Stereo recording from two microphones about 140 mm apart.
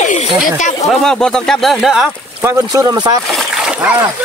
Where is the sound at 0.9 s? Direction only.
5° left (ahead or behind).